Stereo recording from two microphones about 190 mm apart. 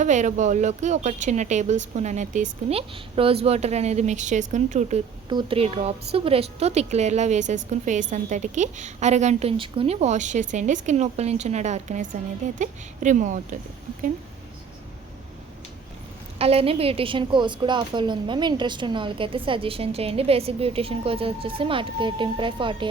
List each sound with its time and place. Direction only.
0.0 s a woman's voice: 40° right (ahead or behind)
5.3 s a woman's voice: 25° right (ahead or behind); by 13.6 s 40° right (ahead or behind)
16.4 s a woman's voice: 30° right (ahead or behind)